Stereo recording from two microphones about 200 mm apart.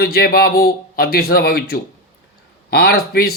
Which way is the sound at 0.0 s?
50° left (ahead or behind).